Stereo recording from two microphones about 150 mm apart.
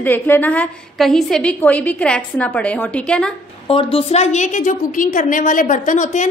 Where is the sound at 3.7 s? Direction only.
40° left (ahead or behind).